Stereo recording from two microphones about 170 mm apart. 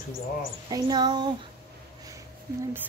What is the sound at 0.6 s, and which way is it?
Speech, 25° right (ahead or behind).